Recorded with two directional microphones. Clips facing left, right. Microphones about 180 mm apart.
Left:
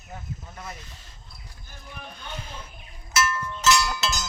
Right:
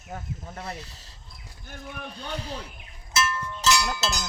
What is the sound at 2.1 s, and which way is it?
Speech, 35° right (ahead or behind).